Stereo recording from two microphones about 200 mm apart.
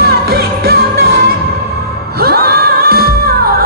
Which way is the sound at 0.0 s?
50° right (ahead or behind).